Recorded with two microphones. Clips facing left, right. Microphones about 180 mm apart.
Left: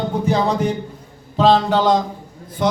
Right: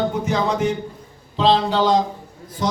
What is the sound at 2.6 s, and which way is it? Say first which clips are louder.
Speech: left 3 dB; 60° left (ahead or behind).